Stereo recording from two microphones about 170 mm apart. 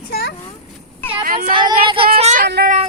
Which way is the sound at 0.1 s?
65° left (ahead or behind).